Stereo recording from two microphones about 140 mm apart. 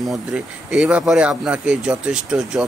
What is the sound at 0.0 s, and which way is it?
A man's voice, centre (ahead or behind).